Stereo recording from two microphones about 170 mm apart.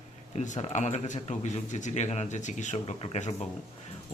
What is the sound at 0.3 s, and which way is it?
Speech, 45° left (ahead or behind).